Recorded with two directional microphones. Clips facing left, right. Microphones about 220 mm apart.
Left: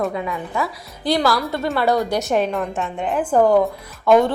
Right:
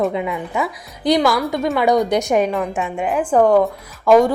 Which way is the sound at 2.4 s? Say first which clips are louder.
Right 2 dB; centre (ahead or behind).